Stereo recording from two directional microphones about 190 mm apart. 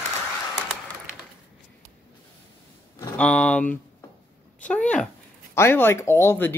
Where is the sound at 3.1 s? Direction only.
5° left (ahead or behind).